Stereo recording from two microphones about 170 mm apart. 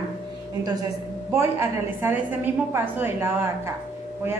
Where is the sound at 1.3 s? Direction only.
15° right (ahead or behind).